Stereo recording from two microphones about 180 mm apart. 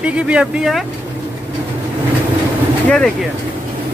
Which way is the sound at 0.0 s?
5° right (ahead or behind).